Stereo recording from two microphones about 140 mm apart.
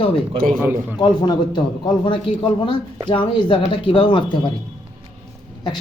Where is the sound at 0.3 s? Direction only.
90° right.